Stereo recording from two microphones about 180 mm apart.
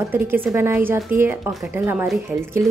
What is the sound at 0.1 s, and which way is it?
Speech, 10° right (ahead or behind).